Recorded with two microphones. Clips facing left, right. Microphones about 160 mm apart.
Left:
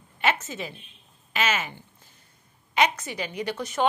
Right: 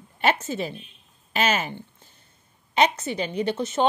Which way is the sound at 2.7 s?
30° right (ahead or behind).